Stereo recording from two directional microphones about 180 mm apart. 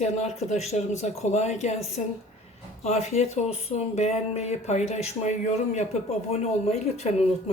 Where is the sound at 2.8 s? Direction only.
35° left (ahead or behind).